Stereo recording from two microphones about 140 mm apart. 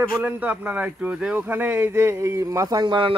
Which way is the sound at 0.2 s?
10° right (ahead or behind).